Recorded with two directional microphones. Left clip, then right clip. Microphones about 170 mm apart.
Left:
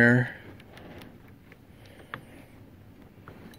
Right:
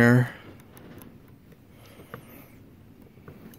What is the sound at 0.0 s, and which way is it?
Speech, 35° right (ahead or behind).